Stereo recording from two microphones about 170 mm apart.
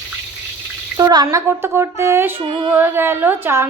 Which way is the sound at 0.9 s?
20° right (ahead or behind).